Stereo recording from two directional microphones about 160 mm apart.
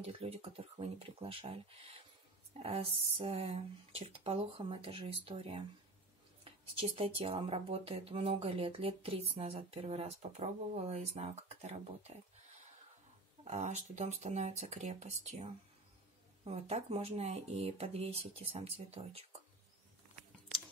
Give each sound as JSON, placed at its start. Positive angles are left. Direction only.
{"t": 0.0, "sound": "speech", "side_deg": -40}
{"t": 13.4, "sound": "speech", "side_deg": -45}